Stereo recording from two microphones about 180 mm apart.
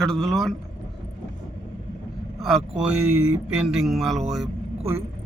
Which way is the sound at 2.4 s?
Centre (ahead or behind).